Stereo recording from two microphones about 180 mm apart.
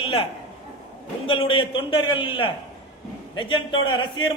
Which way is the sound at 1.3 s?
30° left (ahead or behind).